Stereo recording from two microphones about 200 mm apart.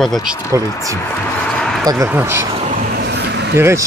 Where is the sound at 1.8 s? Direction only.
15° right (ahead or behind).